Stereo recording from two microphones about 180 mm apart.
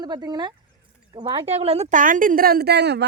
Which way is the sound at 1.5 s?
35° right (ahead or behind).